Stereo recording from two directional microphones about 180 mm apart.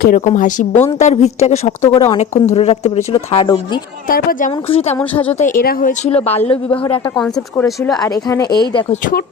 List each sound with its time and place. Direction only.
0.0 s speech: 50° left (ahead or behind); by 3.6 s 30° left (ahead or behind)
4.1 s speech: 50° left (ahead or behind)
4.7 s speech: 35° left (ahead or behind)
5.4 s speech: 50° left (ahead or behind)
6.1 s speech: 35° left (ahead or behind)
7.2 s speech: 5° left (ahead or behind); by 8.8 s 20° left (ahead or behind)